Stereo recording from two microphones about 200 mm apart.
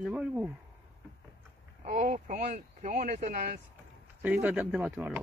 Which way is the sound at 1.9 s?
40° right (ahead or behind).